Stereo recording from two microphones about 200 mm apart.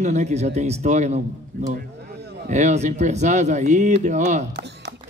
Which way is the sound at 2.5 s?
35° right (ahead or behind).